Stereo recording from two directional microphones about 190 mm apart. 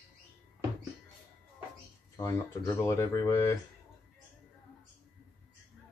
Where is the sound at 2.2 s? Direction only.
15° left (ahead or behind).